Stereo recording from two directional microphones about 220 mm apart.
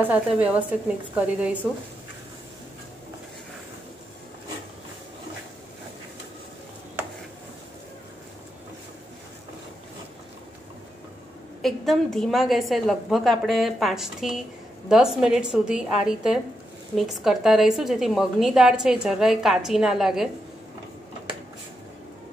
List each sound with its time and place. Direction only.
0.0 s a woman's voice: 5° right (ahead or behind)
11.6 s a woman's voice: centre (ahead or behind)